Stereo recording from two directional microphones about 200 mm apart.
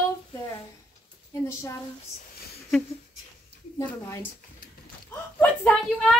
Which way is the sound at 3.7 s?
10° left (ahead or behind).